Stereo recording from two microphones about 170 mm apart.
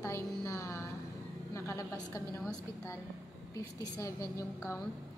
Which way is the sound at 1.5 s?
15° left (ahead or behind).